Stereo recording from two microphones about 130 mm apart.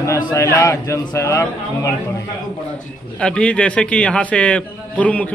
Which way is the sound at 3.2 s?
10° left (ahead or behind).